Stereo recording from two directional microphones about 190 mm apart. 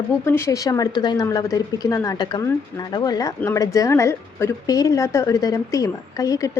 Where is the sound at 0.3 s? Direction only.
15° left (ahead or behind).